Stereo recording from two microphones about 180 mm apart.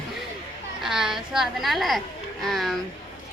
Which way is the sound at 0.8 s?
5° right (ahead or behind).